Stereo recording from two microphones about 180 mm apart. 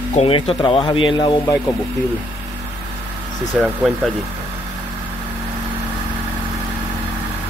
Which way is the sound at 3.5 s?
Centre (ahead or behind).